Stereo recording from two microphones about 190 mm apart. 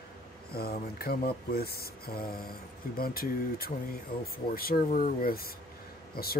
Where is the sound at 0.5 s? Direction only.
55° left (ahead or behind).